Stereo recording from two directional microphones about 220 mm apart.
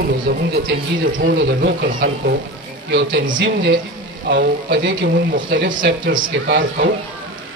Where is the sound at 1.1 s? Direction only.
45° right (ahead or behind).